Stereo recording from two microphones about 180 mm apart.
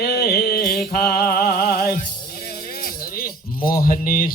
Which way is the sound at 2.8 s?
55° left (ahead or behind).